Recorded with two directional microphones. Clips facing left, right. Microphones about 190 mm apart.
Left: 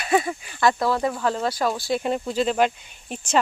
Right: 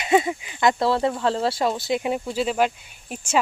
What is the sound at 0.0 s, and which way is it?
Speech, 20° right (ahead or behind).